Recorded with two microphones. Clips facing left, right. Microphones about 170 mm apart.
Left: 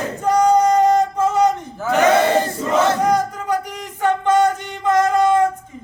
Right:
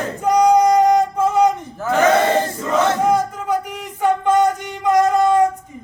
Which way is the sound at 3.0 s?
5° right (ahead or behind).